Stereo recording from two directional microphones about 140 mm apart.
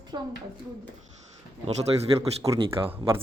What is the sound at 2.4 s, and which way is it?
Speech, 40° right (ahead or behind).